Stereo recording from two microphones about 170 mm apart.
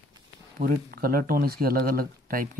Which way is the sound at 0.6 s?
60° right (ahead or behind).